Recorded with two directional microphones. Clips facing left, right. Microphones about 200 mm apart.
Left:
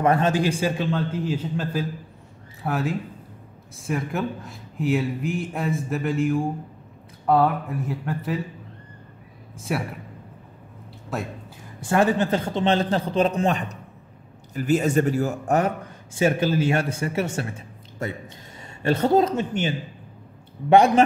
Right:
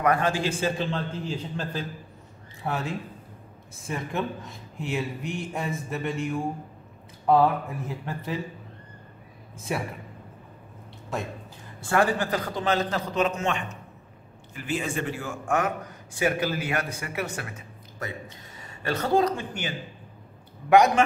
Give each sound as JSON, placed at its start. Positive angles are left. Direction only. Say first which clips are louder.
{"t": 0.0, "sound": "a man's voice", "louder": "left 4 dB", "side_deg": 25}
{"t": 9.6, "sound": "a man's voice", "louder": "left 3 dB", "side_deg": 0}
{"t": 11.8, "sound": "a man's voice", "louder": "left 4 dB", "side_deg": 20}
{"t": 16.1, "sound": "a man's voice", "louder": "left 5 dB", "side_deg": 25}
{"t": 20.7, "sound": "a man's voice", "louder": "left 3 dB", "side_deg": 30}